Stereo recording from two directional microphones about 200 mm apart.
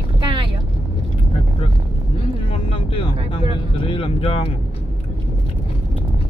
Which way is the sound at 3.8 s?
25° left (ahead or behind).